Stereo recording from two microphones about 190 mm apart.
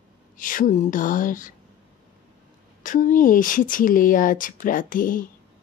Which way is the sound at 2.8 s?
45° left (ahead or behind).